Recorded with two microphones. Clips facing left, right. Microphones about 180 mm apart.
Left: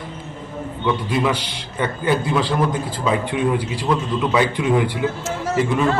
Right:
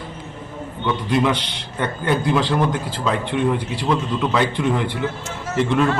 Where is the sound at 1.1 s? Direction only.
Centre (ahead or behind).